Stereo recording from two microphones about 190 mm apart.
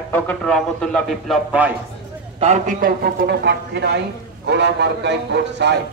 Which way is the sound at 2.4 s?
40° right (ahead or behind).